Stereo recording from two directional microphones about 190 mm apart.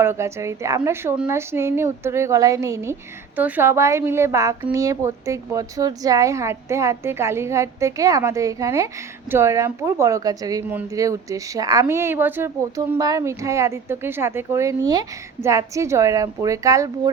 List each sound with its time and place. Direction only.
0.0 s speech: 15° right (ahead or behind)